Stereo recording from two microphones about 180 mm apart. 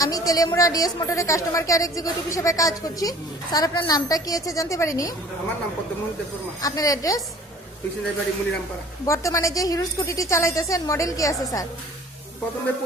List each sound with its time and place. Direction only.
0.0 s a woman's voice: 20° left (ahead or behind)
6.6 s a woman's voice: 20° left (ahead or behind)
9.0 s a woman's voice: 15° left (ahead or behind)